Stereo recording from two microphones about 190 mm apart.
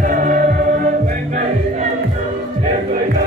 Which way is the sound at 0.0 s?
45° right (ahead or behind).